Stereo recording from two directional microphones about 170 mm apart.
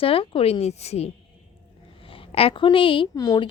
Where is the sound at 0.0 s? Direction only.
35° left (ahead or behind).